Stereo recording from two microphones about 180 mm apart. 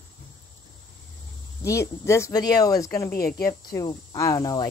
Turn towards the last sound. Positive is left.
turn(degrees=20)  # may be behind; listen again after turning